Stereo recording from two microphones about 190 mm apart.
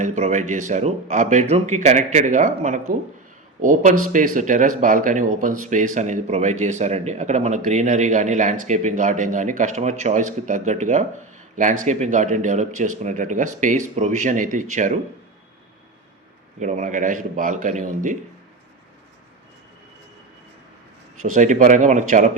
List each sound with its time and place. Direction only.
0.0 s speech: 40° right (ahead or behind)
16.6 s a man's voice: 40° right (ahead or behind)
21.2 s speech: 40° right (ahead or behind)